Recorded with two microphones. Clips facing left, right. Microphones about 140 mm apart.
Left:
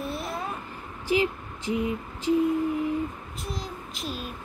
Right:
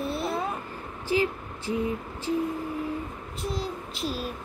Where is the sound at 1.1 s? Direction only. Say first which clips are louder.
Left 1 dB; 15° left (ahead or behind).